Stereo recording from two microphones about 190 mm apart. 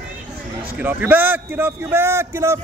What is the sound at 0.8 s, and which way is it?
A man's voice, 10° right (ahead or behind).